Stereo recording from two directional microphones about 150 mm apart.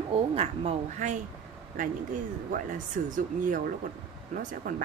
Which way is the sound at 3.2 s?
65° right (ahead or behind).